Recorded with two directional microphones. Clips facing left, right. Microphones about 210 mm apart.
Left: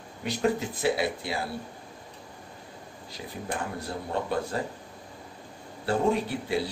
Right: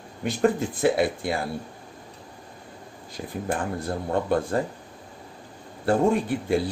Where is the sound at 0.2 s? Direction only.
50° right (ahead or behind).